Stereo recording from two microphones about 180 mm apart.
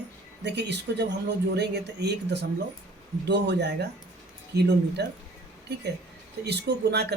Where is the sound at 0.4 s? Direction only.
70° right (ahead or behind).